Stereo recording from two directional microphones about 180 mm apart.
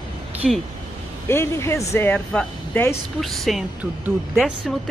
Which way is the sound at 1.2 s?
15° left (ahead or behind).